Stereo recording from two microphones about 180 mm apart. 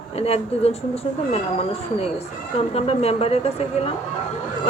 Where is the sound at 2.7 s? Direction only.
35° left (ahead or behind).